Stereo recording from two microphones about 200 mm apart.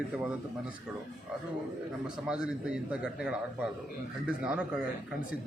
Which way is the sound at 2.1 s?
5° right (ahead or behind).